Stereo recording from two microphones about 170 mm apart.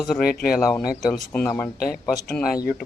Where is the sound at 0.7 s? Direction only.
Centre (ahead or behind).